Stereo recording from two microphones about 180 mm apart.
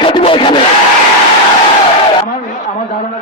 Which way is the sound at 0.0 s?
30° left (ahead or behind).